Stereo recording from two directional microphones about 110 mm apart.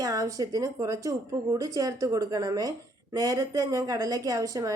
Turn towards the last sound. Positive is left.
turn(degrees=-30)  # may be behind; listen again after turning